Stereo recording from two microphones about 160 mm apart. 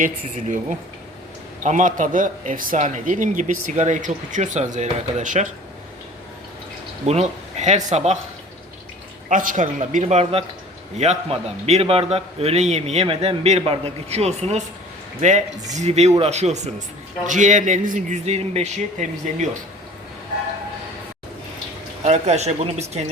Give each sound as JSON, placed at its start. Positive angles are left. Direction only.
{"t": 0.0, "sound": "a man's voice", "side_deg": -50}
{"t": 1.6, "sound": "a man's voice", "side_deg": -50}
{"t": 7.0, "sound": "a man's voice", "side_deg": -40}
{"t": 9.3, "sound": "a man's voice", "side_deg": -55}
{"t": 22.0, "sound": "a man's voice", "side_deg": -45}